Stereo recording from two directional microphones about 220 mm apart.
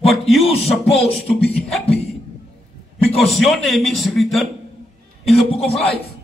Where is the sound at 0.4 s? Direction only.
25° left (ahead or behind).